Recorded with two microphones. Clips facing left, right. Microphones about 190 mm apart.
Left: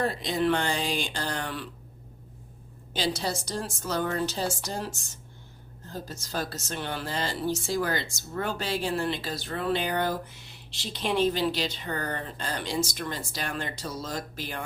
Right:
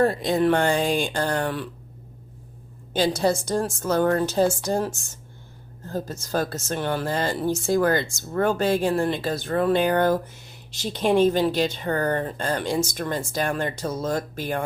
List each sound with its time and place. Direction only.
0.0 s speech: 50° right (ahead or behind)
2.9 s speech: 50° right (ahead or behind)
5.9 s speech: 50° right (ahead or behind)